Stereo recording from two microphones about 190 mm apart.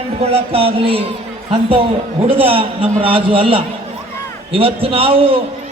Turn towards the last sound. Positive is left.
turn(degrees=-30)  # may be behind; listen again after turning